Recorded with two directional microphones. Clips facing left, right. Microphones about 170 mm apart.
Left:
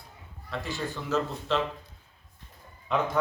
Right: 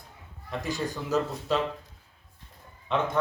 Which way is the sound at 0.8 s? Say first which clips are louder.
Right 1 dB; 15° right (ahead or behind).